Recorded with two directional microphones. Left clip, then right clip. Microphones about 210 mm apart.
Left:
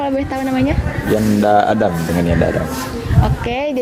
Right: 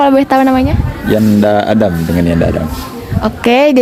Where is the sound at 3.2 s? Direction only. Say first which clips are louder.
Right 12 dB; 45° right (ahead or behind).